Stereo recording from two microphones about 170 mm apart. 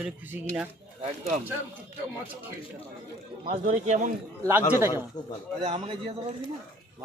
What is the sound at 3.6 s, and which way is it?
Speech, 45° right (ahead or behind).